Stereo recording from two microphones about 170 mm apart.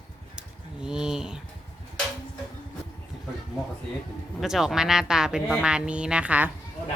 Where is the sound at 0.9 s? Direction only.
5° right (ahead or behind).